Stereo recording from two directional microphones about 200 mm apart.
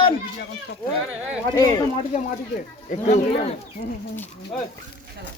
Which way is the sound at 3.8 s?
55° left (ahead or behind).